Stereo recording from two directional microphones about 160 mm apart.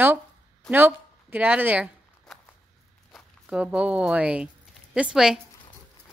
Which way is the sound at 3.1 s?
5° right (ahead or behind).